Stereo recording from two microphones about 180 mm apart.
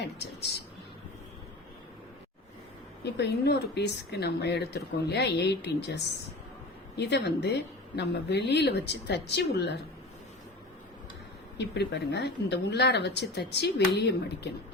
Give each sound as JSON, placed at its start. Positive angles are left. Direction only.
{"t": 3.0, "sound": "speech", "side_deg": 70}
{"t": 11.5, "sound": "speech", "side_deg": 70}